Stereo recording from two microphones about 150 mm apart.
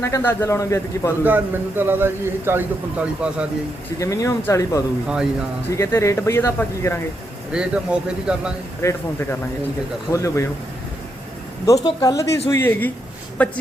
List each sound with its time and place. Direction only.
0.0 s speech: 15° left (ahead or behind)
1.2 s a man's voice: 15° right (ahead or behind)
3.9 s speech: 20° left (ahead or behind)
7.5 s a man's voice: 5° right (ahead or behind)
8.8 s speech: 20° left (ahead or behind)
10.1 s speech: 20° left (ahead or behind)
11.6 s speech: 20° left (ahead or behind)